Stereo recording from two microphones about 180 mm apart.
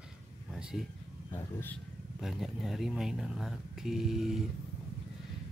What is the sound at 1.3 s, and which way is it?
Speech, 15° left (ahead or behind).